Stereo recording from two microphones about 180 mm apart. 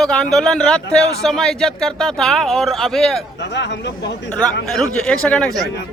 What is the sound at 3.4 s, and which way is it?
Speech, 75° left (ahead or behind).